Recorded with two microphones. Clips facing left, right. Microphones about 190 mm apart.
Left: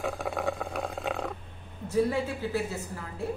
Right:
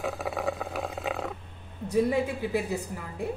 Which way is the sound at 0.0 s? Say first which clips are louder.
Even; centre (ahead or behind).